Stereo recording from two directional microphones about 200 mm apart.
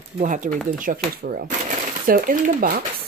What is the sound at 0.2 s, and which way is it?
Speech, 40° right (ahead or behind).